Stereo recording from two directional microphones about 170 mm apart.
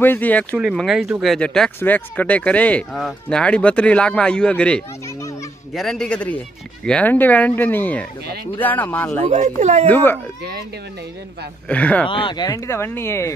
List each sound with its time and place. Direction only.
0.0 s speech: 10° left (ahead or behind)
0.6 s speech: 5° right (ahead or behind)
9.3 s speech: 45° right (ahead or behind)
9.8 s speech: 10° left (ahead or behind)
11.7 s speech: 10° left (ahead or behind)
12.1 s speech: 30° left (ahead or behind)